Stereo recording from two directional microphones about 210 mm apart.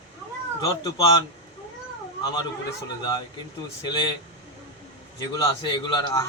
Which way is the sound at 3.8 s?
20° left (ahead or behind).